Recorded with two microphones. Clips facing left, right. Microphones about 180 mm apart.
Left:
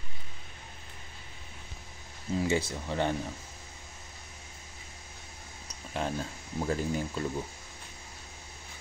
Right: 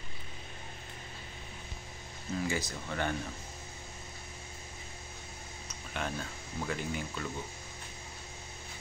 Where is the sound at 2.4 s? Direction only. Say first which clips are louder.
Left 7 dB; 25° left (ahead or behind).